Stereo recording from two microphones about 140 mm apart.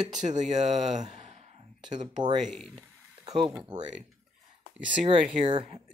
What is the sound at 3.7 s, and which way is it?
Speech, 30° right (ahead or behind).